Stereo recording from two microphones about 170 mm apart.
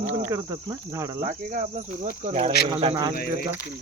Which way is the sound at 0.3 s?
15° right (ahead or behind).